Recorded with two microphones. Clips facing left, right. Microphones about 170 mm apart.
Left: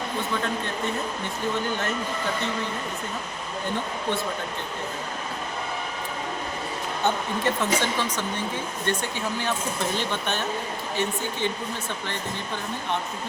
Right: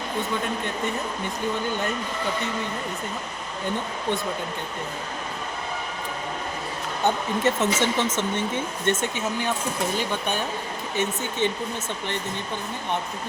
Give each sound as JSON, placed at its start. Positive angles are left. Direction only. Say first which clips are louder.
{"t": 7.0, "sound": "a woman's voice", "louder": "right 3 dB", "side_deg": -25}
{"t": 10.9, "sound": "a woman's voice", "louder": "right 2 dB", "side_deg": -20}